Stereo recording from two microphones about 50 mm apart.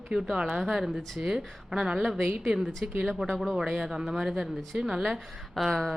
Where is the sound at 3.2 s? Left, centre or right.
Centre.